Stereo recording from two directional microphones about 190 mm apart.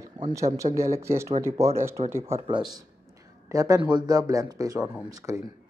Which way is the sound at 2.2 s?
25° right (ahead or behind).